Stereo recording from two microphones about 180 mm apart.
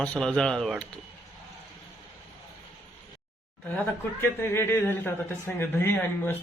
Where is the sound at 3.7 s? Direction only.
15° left (ahead or behind).